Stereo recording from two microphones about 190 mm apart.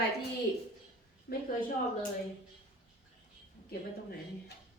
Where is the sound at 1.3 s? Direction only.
50° left (ahead or behind).